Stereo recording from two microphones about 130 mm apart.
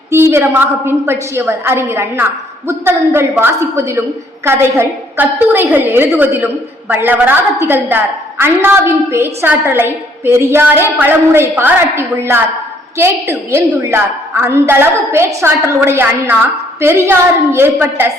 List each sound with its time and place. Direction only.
0.1 s a woman's voice: 20° right (ahead or behind)